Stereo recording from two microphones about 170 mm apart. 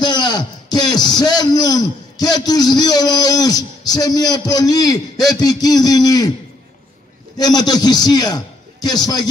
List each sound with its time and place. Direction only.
0.0 s a man's voice: 25° left (ahead or behind)
7.3 s a man's voice: 25° left (ahead or behind)